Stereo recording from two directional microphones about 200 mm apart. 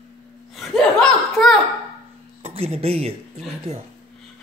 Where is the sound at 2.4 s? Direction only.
30° right (ahead or behind).